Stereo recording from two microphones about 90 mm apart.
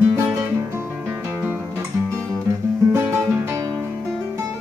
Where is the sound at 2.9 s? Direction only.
30° right (ahead or behind).